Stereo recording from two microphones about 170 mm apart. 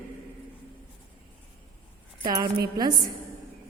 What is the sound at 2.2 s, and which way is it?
Speech, 25° right (ahead or behind).